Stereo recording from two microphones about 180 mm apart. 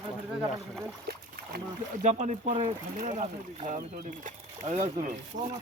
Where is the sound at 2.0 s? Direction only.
40° right (ahead or behind).